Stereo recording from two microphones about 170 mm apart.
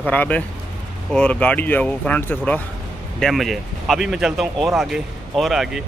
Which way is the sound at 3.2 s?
Centre (ahead or behind).